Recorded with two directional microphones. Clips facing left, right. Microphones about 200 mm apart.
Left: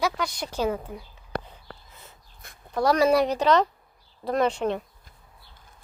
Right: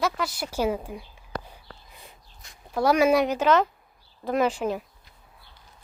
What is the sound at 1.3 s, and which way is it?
Whispering, 60° left (ahead or behind).